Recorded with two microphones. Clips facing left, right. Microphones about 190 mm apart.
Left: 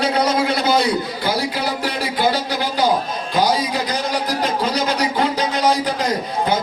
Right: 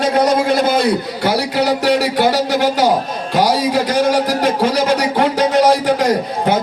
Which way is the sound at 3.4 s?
70° right (ahead or behind).